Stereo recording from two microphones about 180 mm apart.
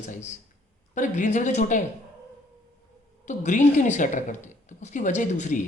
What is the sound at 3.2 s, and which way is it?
Speech, 40° left (ahead or behind).